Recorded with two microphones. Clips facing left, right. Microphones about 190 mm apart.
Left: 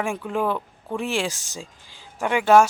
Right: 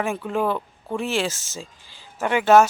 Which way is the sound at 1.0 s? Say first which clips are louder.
Right 1 dB; 15° left (ahead or behind).